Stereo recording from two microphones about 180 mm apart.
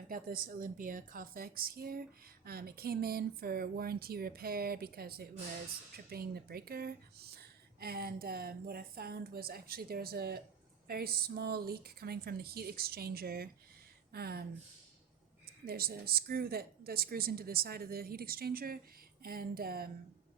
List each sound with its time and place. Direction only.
0.1 s a woman's voice: 55° right (ahead or behind)
15.6 s a woman's voice: 60° right (ahead or behind)